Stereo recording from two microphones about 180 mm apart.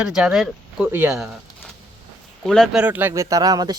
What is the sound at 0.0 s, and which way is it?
Speech, 5° right (ahead or behind).